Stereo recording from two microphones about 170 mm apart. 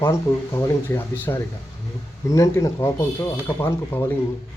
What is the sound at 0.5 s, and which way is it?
Speech, 15° left (ahead or behind).